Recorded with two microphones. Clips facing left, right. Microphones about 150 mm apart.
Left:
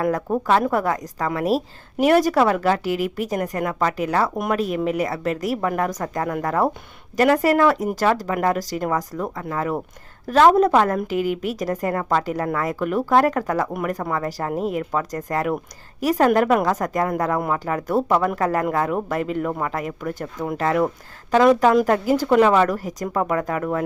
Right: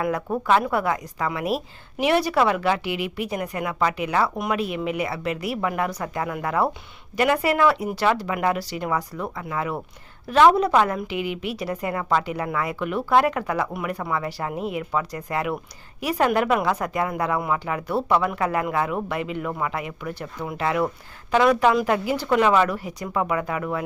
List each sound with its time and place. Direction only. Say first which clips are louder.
0.4 s a woman's voice: left 1 dB; 40° left (ahead or behind)